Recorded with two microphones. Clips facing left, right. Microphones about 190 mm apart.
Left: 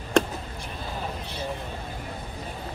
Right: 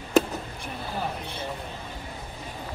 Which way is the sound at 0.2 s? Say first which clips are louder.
Right 1 dB; 5° right (ahead or behind).